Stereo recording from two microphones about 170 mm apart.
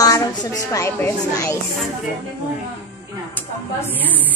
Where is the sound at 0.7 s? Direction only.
15° left (ahead or behind).